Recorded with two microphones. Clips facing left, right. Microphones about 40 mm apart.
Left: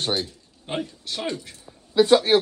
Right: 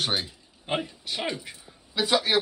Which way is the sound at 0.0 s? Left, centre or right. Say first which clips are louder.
Left 2 dB; centre.